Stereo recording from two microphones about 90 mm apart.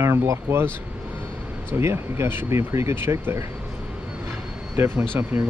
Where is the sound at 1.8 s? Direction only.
30° right (ahead or behind).